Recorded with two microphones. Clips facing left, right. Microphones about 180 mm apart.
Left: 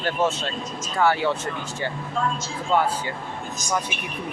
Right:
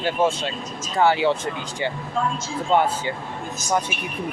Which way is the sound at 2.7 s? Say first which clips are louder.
Right 2 dB; 25° right (ahead or behind).